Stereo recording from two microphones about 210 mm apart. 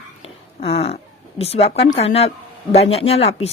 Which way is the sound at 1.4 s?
30° left (ahead or behind).